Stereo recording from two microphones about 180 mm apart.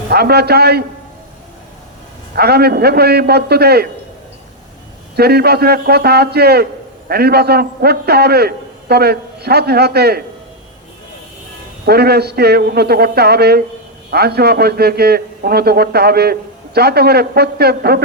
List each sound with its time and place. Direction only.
0.1 s a man's voice: 60° right (ahead or behind)
2.3 s a man's voice: 60° right (ahead or behind)
5.1 s a man's voice: 60° right (ahead or behind)
11.9 s a man's voice: 60° right (ahead or behind)